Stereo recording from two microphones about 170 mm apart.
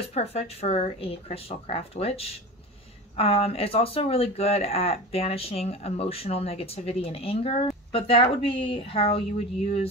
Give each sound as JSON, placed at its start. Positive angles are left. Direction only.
{"t": 0.1, "sound": "speech", "side_deg": 40}